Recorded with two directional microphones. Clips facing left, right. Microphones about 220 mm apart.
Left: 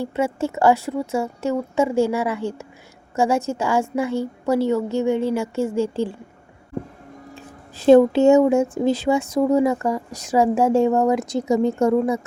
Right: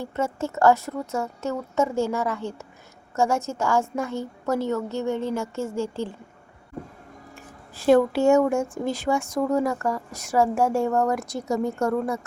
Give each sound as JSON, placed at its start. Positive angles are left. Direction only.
{"t": 0.1, "sound": "speech", "side_deg": 15}
{"t": 7.3, "sound": "speech", "side_deg": 20}